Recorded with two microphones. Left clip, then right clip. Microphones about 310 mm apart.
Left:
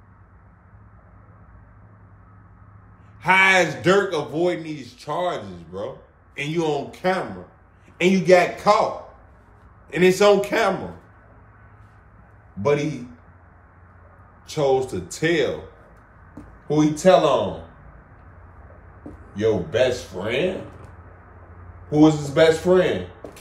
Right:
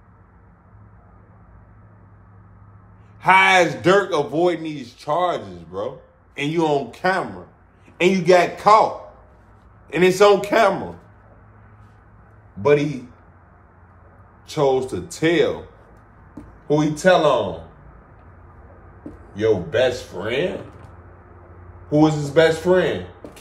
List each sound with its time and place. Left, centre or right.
3.2 s a man's voice: centre
9.8 s a man's voice: centre
14.5 s a man's voice: centre
16.7 s a man's voice: centre
19.3 s a man's voice: centre
21.8 s a man's voice: centre